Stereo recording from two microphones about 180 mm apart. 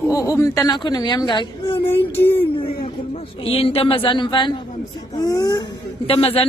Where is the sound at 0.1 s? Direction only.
15° left (ahead or behind).